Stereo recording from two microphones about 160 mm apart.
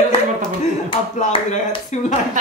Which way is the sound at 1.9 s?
45° left (ahead or behind).